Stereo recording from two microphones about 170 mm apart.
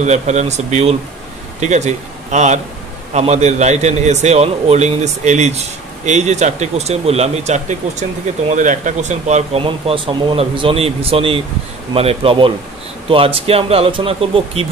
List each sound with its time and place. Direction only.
0.0 s speech: 45° right (ahead or behind)